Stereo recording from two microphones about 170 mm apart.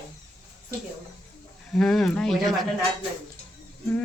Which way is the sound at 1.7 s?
5° left (ahead or behind).